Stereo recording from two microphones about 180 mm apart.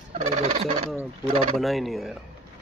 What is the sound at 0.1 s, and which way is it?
Fowl, 40° right (ahead or behind).